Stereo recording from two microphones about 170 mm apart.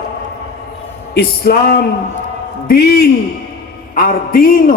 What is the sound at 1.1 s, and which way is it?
Speech, 70° left (ahead or behind).